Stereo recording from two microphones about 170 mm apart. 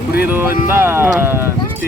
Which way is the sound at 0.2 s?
10° right (ahead or behind).